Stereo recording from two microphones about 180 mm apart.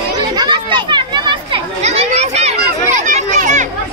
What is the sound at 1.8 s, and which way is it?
Children playing, 35° right (ahead or behind).